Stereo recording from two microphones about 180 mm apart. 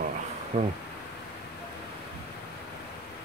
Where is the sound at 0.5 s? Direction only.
40° right (ahead or behind).